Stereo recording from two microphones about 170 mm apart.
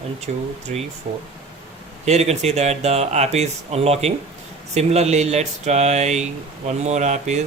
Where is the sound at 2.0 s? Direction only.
40° right (ahead or behind).